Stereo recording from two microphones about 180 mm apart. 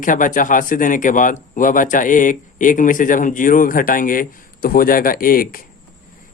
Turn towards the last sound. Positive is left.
turn(degrees=55)  # may be behind; listen again after turning